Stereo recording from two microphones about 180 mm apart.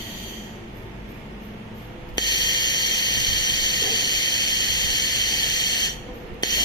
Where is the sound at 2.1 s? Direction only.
25° left (ahead or behind).